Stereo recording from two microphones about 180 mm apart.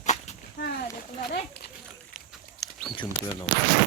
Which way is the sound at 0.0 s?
40° left (ahead or behind).